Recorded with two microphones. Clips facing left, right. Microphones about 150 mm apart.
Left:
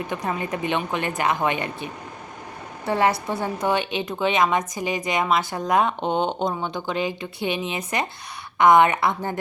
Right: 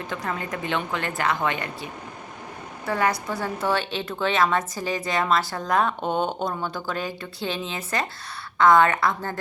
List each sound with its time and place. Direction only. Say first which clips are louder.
0.1 s a woman's voice: left 1 dB; 15° left (ahead or behind)
6.0 s speech: left 2 dB; 10° right (ahead or behind)
6.6 s speech: left 3 dB; 20° left (ahead or behind)